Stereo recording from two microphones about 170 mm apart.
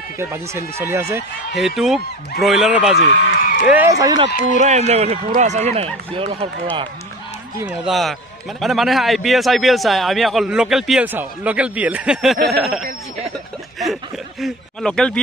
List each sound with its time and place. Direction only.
0.2 s speech: 15° right (ahead or behind)
1.5 s a man's voice: centre (ahead or behind)
3.3 s a sound: 55° left (ahead or behind)
3.7 s speech: 15° right (ahead or behind)
4.6 s speech: 40° right (ahead or behind)
7.6 s a man's voice: centre (ahead or behind)
14.4 s a man's voice: centre (ahead or behind)